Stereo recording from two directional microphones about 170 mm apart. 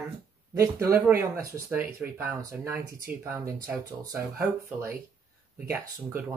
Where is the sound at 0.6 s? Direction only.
10° right (ahead or behind).